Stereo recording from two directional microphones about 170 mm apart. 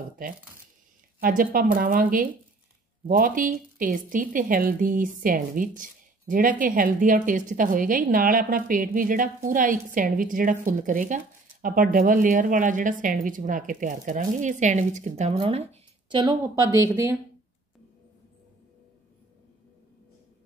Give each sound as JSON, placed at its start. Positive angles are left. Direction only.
{"t": 1.2, "sound": "a woman's voice", "side_deg": -55}